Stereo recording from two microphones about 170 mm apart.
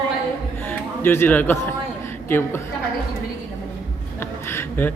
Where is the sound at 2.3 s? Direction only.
15° left (ahead or behind).